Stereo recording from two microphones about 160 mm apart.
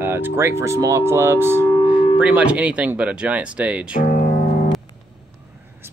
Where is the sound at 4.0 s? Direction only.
55° left (ahead or behind).